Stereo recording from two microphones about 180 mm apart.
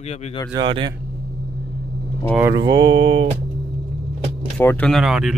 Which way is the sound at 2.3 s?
15° right (ahead or behind).